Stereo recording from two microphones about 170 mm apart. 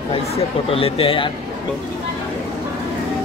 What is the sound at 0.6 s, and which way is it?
Speech, 35° left (ahead or behind).